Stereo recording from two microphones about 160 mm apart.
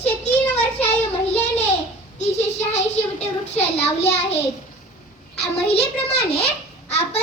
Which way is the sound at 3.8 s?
40° left (ahead or behind).